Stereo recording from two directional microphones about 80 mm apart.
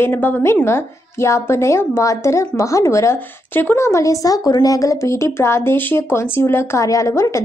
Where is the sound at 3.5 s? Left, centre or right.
Left.